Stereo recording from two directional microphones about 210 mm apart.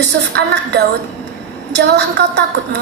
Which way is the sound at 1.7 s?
55° right (ahead or behind).